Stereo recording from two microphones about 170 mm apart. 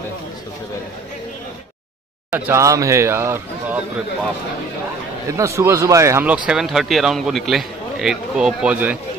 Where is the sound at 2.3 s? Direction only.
15° right (ahead or behind).